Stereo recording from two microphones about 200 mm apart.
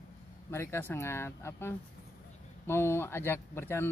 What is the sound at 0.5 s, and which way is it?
Speech, 10° left (ahead or behind).